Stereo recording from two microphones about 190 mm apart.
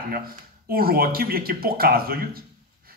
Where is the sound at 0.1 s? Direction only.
50° right (ahead or behind).